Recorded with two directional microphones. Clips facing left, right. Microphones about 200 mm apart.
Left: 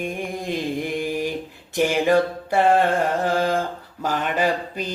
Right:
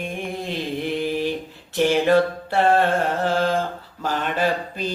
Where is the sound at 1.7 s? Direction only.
10° left (ahead or behind).